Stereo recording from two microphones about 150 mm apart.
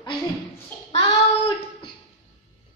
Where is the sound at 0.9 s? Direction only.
35° left (ahead or behind).